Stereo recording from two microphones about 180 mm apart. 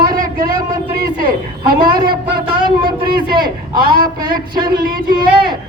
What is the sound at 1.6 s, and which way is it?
Speech, 55° right (ahead or behind).